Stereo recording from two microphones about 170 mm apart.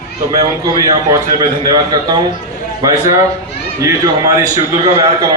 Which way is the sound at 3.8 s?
20° right (ahead or behind).